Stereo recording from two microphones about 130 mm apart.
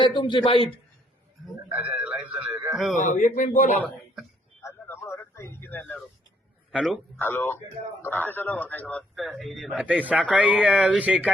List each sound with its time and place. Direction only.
0.0 s a man's voice: 40° left (ahead or behind)
1.7 s speech: 10° right (ahead or behind)
2.9 s speech: 75° left (ahead or behind)
3.8 s a man's voice: centre (ahead or behind)
4.6 s a sound: 20° left (ahead or behind)
6.7 s speech: 5° right (ahead or behind)
7.2 s a man's voice: 15° left (ahead or behind)
9.8 s speech: 10° right (ahead or behind)